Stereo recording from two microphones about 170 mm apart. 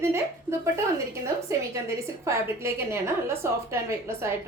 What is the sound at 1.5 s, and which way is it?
A woman's voice, 20° right (ahead or behind).